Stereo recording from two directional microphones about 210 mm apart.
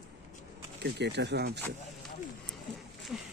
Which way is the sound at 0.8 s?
55° right (ahead or behind).